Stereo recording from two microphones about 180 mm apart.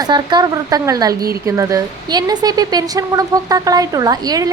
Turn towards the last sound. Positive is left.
turn(degrees=-20)  # may be behind; listen again after turning